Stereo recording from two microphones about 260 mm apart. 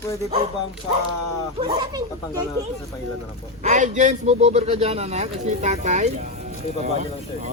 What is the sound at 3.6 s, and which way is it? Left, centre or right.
A man's voice, right.